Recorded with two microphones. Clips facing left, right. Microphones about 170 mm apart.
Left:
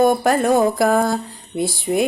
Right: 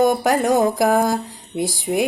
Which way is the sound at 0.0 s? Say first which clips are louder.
Left 1 dB; 20° right (ahead or behind).